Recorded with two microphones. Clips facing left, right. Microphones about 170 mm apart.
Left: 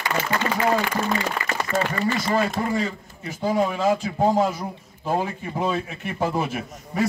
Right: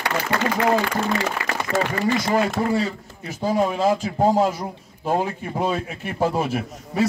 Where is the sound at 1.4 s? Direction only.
80° right.